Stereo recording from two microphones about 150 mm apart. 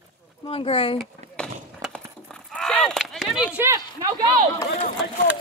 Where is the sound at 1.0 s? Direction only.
5° left (ahead or behind).